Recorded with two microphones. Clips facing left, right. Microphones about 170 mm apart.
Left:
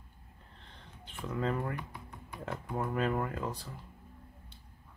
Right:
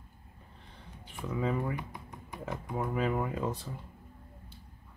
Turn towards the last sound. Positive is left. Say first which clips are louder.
# right 4 dB
turn(degrees=-20)  # may be behind; listen again after turning